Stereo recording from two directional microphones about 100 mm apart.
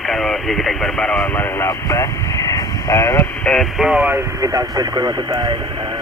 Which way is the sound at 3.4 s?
10° left (ahead or behind).